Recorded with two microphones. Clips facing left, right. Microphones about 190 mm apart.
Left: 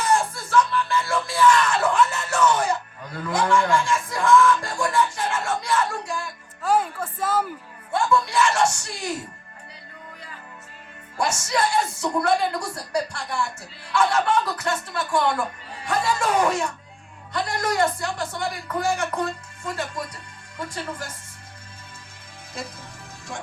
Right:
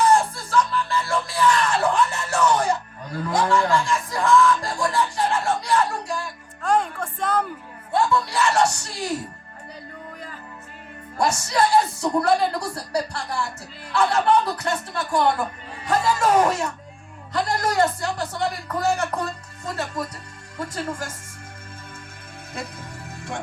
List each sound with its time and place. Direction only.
0.0 s music: 35° right (ahead or behind)
6.6 s music: 5° left (ahead or behind)
7.9 s snicker: 35° right (ahead or behind)
11.2 s speech: 35° right (ahead or behind)